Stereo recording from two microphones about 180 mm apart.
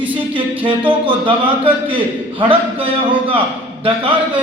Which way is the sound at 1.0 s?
30° right (ahead or behind).